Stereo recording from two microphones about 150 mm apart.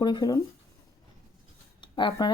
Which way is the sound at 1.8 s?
30° left (ahead or behind).